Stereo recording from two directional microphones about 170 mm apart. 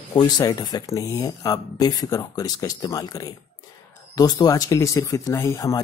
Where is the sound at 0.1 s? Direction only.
25° left (ahead or behind).